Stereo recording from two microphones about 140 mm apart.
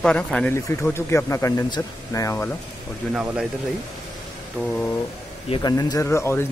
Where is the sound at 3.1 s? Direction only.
10° right (ahead or behind).